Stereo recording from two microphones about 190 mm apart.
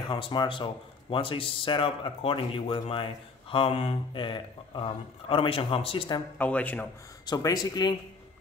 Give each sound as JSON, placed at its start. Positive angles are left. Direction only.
{"t": 0.0, "sound": "speech", "side_deg": 25}
{"t": 6.3, "sound": "speech", "side_deg": 10}
{"t": 7.2, "sound": "speech", "side_deg": 20}